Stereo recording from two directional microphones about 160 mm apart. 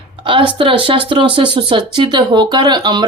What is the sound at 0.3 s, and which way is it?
Speech, 35° right (ahead or behind).